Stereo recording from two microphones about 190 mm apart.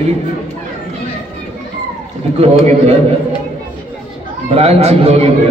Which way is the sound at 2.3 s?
35° right (ahead or behind).